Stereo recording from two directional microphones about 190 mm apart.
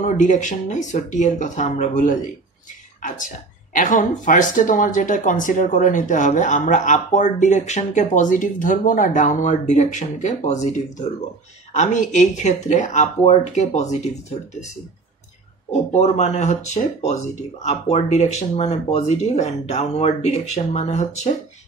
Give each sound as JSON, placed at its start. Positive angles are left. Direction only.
{"t": 0.0, "sound": "speech", "side_deg": 40}
{"t": 3.7, "sound": "speech", "side_deg": 45}
{"t": 15.9, "sound": "speech", "side_deg": 35}